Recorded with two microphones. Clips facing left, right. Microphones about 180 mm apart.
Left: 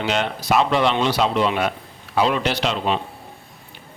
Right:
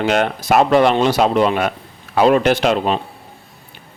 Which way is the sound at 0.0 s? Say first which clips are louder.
Right 6 dB; 50° right (ahead or behind).